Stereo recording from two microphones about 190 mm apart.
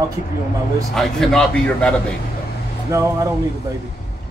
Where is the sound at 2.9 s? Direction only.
15° right (ahead or behind).